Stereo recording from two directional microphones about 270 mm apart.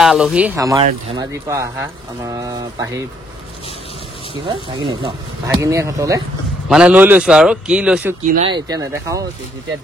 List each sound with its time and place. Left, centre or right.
0.0 s a man's voice: centre
4.5 s a man's voice: centre